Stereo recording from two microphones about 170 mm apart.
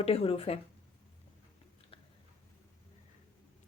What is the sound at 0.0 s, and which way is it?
Speech, 35° left (ahead or behind).